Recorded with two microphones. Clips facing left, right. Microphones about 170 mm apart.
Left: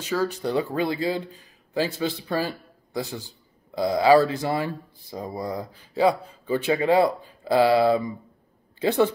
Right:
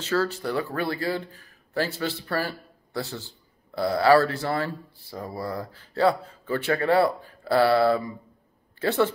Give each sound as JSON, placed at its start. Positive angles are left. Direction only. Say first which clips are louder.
{"t": 0.0, "sound": "speech", "louder": "even", "side_deg": 15}